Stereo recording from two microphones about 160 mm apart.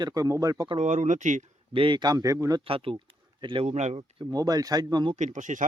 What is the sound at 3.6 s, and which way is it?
Speech, 45° right (ahead or behind).